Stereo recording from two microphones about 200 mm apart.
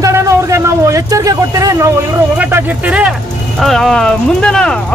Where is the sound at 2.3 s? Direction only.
5° right (ahead or behind).